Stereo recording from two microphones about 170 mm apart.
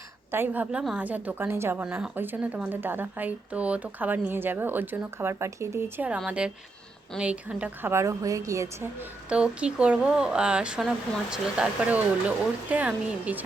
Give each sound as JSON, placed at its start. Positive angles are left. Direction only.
{"t": 0.3, "sound": "a woman's voice", "side_deg": -10}